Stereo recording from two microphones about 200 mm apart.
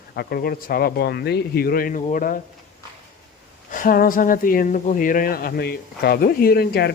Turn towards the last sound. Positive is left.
turn(degrees=50)  # may be behind; listen again after turning